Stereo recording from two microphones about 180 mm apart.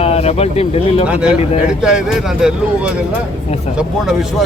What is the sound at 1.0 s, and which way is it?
Speech, 5° right (ahead or behind).